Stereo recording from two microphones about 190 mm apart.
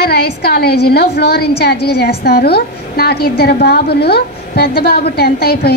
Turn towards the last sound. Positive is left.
turn(degrees=55)  # may be behind; listen again after turning